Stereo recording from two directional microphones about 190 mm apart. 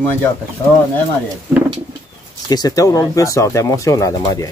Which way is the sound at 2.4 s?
20° left (ahead or behind).